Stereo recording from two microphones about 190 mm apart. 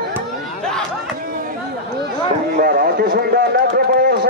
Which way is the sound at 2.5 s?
55° right (ahead or behind).